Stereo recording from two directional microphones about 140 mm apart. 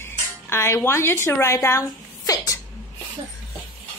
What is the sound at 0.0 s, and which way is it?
Music, 20° left (ahead or behind).